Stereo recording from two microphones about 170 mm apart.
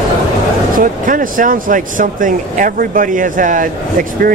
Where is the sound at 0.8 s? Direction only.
55° right (ahead or behind).